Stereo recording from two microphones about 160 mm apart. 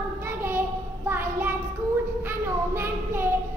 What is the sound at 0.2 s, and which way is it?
Child singing, 15° right (ahead or behind).